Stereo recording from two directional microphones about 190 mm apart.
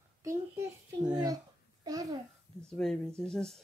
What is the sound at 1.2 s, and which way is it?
Babbling, 20° right (ahead or behind).